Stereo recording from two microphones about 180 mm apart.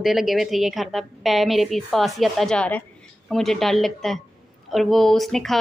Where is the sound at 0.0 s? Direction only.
Centre (ahead or behind).